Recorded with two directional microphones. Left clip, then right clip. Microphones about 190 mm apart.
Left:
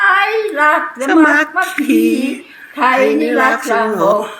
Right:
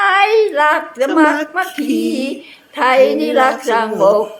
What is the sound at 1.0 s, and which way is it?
Speech, 20° right (ahead or behind).